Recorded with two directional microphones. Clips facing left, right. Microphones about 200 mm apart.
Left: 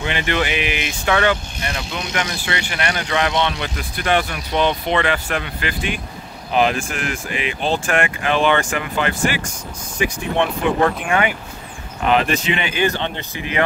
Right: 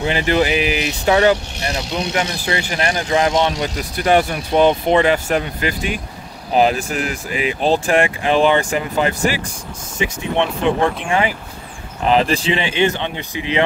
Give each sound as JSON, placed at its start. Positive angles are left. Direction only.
{"t": 0.0, "sound": "speech", "side_deg": -35}
{"t": 9.9, "sound": "speech", "side_deg": -25}